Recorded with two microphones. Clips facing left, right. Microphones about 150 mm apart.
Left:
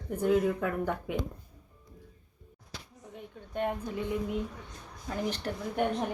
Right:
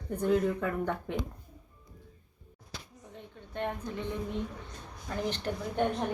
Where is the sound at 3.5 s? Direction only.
10° left (ahead or behind).